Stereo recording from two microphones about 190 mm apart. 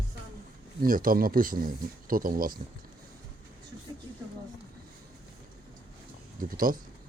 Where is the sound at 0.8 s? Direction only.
45° right (ahead or behind).